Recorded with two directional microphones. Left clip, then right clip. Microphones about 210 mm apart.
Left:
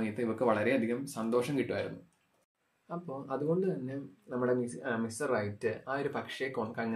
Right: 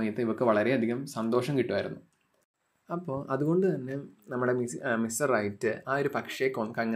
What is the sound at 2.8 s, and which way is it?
Speech, 40° right (ahead or behind).